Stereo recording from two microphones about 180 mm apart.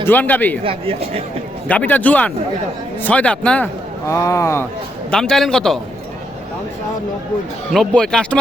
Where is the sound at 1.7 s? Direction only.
10° left (ahead or behind).